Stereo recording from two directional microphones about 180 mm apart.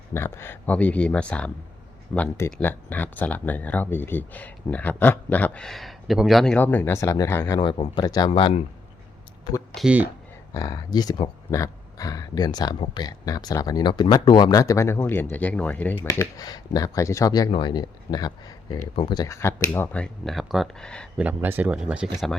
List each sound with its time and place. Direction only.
0.1 s speech: 15° left (ahead or behind)
7.6 s speech: 25° left (ahead or behind)
9.7 s speech: 5° right (ahead or behind)
10.5 s speech: 20° left (ahead or behind)
16.0 s speech: 20° left (ahead or behind)
21.2 s speech: 10° right (ahead or behind)